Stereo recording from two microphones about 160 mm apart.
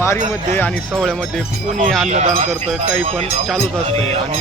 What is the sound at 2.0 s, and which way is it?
Speech, 45° right (ahead or behind).